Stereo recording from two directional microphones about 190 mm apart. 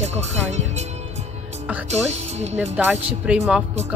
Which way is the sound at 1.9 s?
35° right (ahead or behind).